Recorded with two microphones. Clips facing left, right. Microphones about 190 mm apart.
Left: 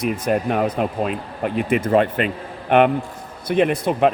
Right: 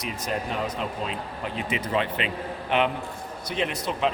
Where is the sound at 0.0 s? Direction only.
55° left (ahead or behind).